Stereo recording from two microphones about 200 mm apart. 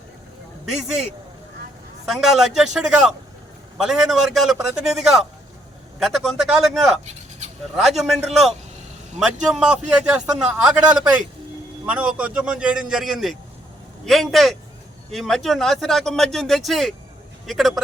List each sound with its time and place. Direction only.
2.0 s a man's voice: centre (ahead or behind)
7.0 s bird: 35° right (ahead or behind)
7.8 s a man's voice: centre (ahead or behind)